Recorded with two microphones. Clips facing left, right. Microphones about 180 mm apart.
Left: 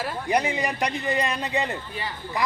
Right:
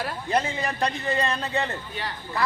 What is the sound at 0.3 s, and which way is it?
A man's voice, 15° left (ahead or behind).